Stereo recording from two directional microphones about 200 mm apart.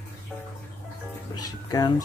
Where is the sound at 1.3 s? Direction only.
20° left (ahead or behind).